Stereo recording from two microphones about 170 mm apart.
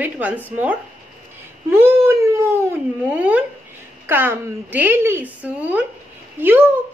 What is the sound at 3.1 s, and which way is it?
A woman's voice, 10° right (ahead or behind).